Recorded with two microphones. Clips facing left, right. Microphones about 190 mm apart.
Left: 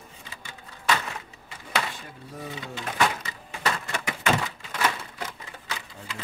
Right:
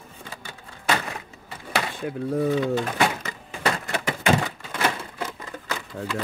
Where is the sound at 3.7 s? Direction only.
35° right (ahead or behind).